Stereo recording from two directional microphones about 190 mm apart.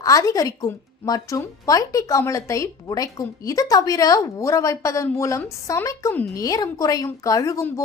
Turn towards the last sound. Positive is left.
turn(degrees=15)  # may be behind; listen again after turning